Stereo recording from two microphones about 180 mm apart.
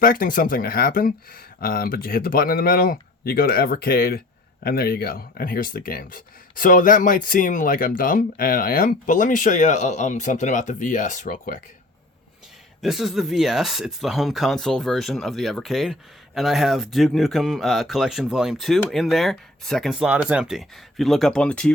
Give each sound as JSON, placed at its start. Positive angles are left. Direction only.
{"t": 0.0, "sound": "speech", "side_deg": 50}
{"t": 12.8, "sound": "speech", "side_deg": 0}